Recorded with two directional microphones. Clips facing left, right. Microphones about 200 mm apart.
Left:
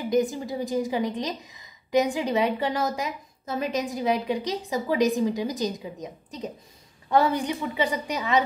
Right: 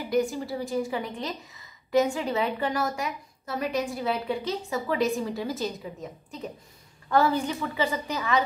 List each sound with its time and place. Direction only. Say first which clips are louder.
0.1 s a woman's voice: left 1 dB; 20° left (ahead or behind)